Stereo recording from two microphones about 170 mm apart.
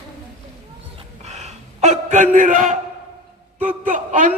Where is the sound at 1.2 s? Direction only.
40° right (ahead or behind).